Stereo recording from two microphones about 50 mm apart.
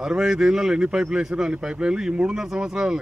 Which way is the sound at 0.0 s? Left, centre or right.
Centre.